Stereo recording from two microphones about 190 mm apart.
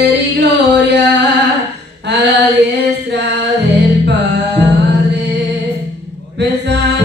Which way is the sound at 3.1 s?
65° right (ahead or behind).